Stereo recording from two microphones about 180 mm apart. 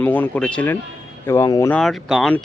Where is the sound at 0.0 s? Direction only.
10° left (ahead or behind).